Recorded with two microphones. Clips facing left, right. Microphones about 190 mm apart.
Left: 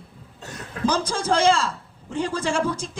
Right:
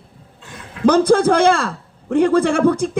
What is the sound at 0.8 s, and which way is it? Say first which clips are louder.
A man's voice: right 10 dB; 60° right (ahead or behind).